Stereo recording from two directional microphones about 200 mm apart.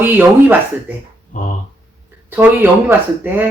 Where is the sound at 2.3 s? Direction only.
10° right (ahead or behind).